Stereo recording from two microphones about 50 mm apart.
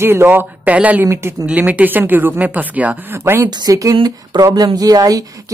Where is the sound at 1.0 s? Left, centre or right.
Right.